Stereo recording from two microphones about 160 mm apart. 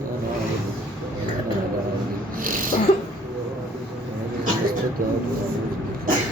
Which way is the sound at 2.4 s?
60° right (ahead or behind).